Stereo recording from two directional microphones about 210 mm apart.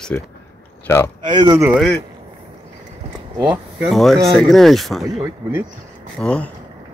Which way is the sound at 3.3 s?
15° right (ahead or behind).